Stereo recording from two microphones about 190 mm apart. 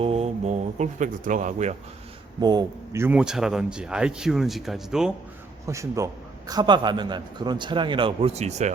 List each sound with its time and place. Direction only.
0.0 s speech: 30° right (ahead or behind)
2.4 s speech: 20° right (ahead or behind); by 5.1 s 5° right (ahead or behind)
5.6 s a man's voice: 15° right (ahead or behind); by 8.7 s 35° right (ahead or behind)